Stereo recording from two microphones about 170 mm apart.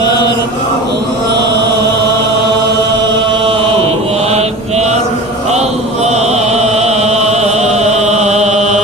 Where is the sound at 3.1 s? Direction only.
30° right (ahead or behind).